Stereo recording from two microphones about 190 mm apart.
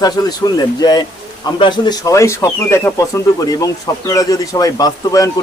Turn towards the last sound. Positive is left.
turn(degrees=20)  # may be behind; listen again after turning